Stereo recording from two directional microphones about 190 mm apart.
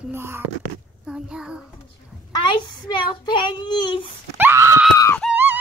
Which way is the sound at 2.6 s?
25° left (ahead or behind).